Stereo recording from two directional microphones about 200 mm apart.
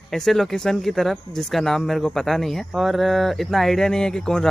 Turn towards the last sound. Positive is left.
turn(degrees=5)  # may be behind; listen again after turning